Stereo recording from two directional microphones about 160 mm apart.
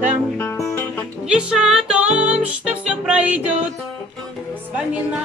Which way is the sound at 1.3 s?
5° right (ahead or behind).